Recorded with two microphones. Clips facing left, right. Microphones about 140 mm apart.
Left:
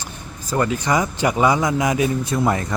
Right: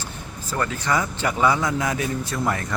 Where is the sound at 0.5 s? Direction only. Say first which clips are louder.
Left 4 dB; 20° left (ahead or behind).